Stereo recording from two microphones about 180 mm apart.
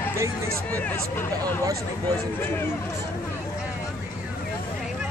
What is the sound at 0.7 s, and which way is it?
Speech, 10° left (ahead or behind).